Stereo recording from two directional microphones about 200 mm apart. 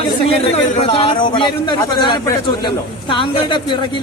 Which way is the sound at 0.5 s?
30° left (ahead or behind).